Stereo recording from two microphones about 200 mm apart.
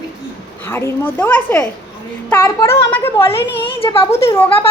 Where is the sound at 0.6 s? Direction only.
10° left (ahead or behind).